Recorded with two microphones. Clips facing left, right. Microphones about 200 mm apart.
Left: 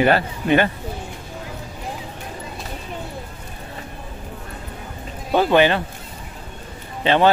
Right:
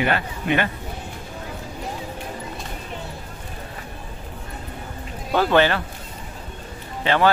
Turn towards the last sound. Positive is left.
turn(degrees=20)  # may be behind; listen again after turning